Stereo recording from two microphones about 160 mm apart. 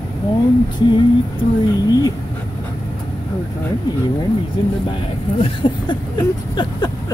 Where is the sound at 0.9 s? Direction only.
25° left (ahead or behind).